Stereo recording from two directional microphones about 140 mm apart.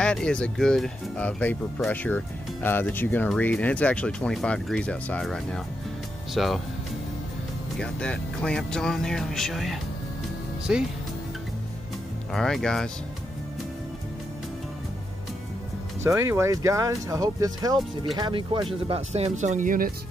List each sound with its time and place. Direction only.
0.0 s speech: 5° left (ahead or behind)
7.7 s speech: 5° left (ahead or behind)
12.3 s speech: 5° left (ahead or behind)
16.0 s speech: 20° right (ahead or behind); by 19.9 s 75° right (ahead or behind)